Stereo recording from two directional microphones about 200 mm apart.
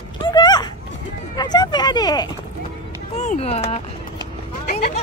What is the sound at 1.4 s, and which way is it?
Speech, 20° left (ahead or behind).